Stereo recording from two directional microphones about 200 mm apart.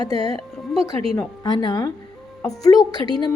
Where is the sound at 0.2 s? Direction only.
30° right (ahead or behind).